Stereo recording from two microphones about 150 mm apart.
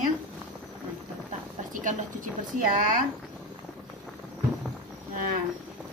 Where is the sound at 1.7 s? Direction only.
60° right (ahead or behind).